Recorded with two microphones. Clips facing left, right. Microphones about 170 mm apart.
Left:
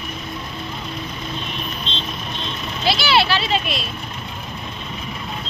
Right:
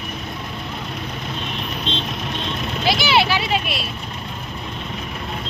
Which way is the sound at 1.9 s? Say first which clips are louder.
Right 5 dB; 60° right (ahead or behind).